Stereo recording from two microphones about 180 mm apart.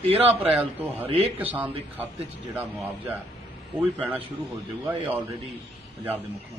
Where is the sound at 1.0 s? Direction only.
30° right (ahead or behind).